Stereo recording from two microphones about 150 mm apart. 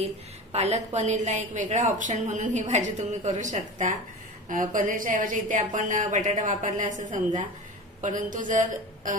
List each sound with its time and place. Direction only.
0.0 s a woman's voice: 45° right (ahead or behind)